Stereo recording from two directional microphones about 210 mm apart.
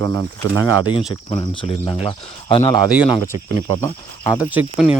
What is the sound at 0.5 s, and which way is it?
Speech, 80° right.